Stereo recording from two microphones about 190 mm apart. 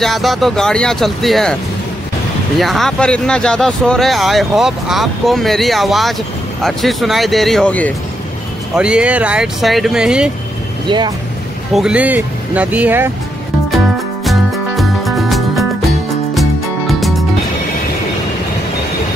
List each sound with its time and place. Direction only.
0.0 s speech: centre (ahead or behind)
2.6 s speech: centre (ahead or behind)
8.7 s speech: 5° right (ahead or behind)
10.9 s speech: 25° right (ahead or behind)
11.7 s speech: 5° right (ahead or behind)
14.2 s music: centre (ahead or behind)